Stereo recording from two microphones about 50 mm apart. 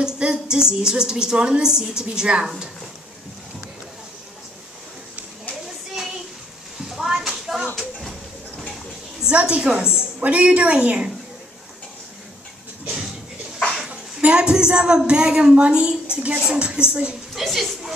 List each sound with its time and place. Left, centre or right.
0.0 s a woman's voice: centre
6.9 s a sound: centre
9.2 s a woman's voice: right
13.8 s a sound: right
15.0 s a woman's voice: centre
17.3 s a woman's voice: centre